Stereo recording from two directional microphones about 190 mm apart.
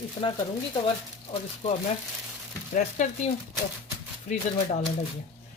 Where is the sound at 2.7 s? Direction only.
40° left (ahead or behind).